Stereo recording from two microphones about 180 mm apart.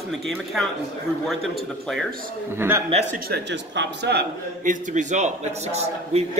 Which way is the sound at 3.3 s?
75° right (ahead or behind).